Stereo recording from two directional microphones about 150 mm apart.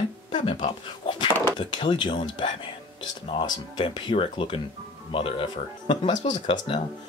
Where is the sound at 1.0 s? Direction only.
30° left (ahead or behind).